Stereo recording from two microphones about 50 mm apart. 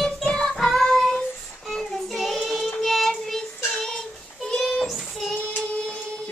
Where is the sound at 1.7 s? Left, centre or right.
Centre.